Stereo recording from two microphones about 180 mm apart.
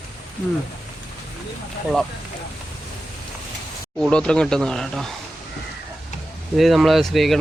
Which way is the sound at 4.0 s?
5° left (ahead or behind).